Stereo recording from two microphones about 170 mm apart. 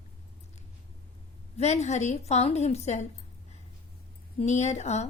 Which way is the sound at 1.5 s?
40° left (ahead or behind).